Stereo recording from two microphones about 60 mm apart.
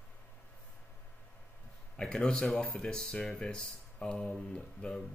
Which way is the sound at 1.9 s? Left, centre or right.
Centre.